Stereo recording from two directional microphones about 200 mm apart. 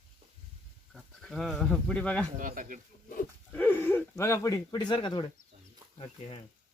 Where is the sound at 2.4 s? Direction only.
45° right (ahead or behind).